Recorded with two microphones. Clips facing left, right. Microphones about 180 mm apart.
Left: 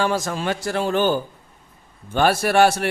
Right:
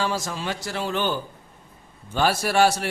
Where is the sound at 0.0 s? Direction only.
55° left (ahead or behind).